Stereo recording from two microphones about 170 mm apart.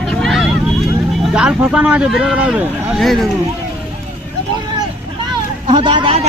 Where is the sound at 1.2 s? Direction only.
5° right (ahead or behind).